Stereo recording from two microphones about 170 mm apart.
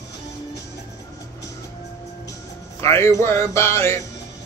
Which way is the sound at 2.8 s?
15° left (ahead or behind).